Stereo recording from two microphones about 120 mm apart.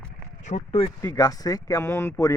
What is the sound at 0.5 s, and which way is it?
Speech, 65° left (ahead or behind).